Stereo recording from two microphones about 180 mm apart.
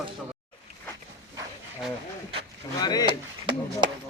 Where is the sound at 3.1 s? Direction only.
25° right (ahead or behind).